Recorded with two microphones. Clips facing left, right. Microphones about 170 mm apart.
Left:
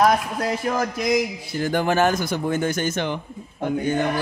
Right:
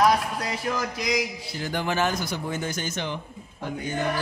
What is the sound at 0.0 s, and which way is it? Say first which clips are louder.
Speech: left 3 dB; 50° left (ahead or behind).